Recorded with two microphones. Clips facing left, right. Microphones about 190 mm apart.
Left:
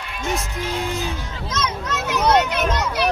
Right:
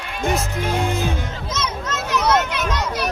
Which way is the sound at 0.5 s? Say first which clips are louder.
Right 3 dB; 55° right (ahead or behind).